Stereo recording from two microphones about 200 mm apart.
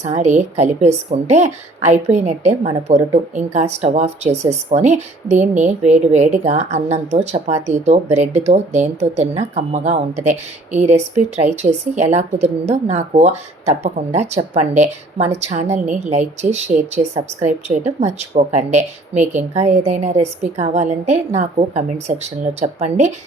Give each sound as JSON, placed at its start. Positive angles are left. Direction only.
{"t": 0.0, "sound": "a woman's voice", "side_deg": -35}